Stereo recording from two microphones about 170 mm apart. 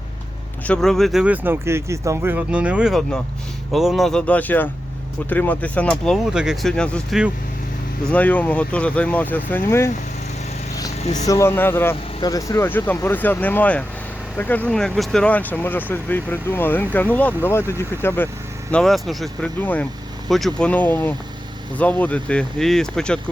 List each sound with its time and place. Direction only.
0.7 s speech: 5° left (ahead or behind)
11.0 s speech: 45° left (ahead or behind)
11.3 s speech: 15° left (ahead or behind)
18.7 s speech: centre (ahead or behind)